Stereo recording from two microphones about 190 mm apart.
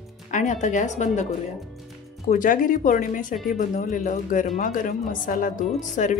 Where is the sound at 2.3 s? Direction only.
45° left (ahead or behind).